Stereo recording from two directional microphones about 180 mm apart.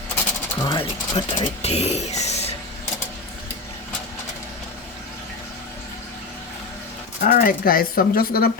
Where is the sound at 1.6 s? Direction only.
35° left (ahead or behind).